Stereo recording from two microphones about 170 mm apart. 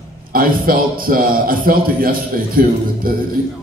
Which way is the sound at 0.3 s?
55° right (ahead or behind).